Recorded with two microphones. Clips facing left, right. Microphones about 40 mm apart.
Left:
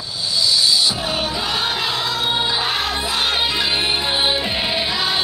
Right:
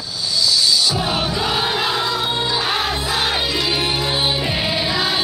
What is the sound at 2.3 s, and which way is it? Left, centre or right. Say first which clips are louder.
Music: left 1 dB; centre.